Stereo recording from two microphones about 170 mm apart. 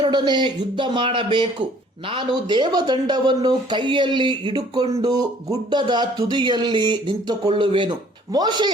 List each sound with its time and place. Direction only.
0.0 s speech: 25° right (ahead or behind)